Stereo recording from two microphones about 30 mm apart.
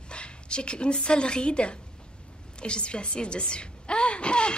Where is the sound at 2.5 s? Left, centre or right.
Left.